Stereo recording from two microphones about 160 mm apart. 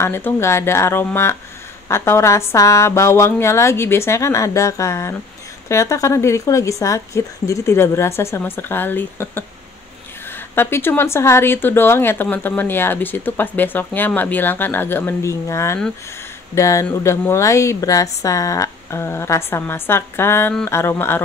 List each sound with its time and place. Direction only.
0.0 s a woman's voice: 15° left (ahead or behind)
10.5 s a woman's voice: 15° left (ahead or behind)